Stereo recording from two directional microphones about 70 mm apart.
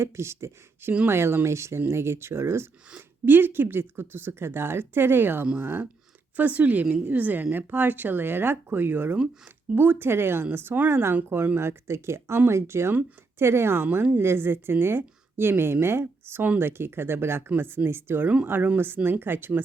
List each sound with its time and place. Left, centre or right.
0.0 s speech: right
9.1 s speech: centre
9.7 s speech: right